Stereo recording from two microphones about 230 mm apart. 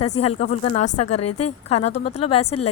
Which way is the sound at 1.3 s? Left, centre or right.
Left.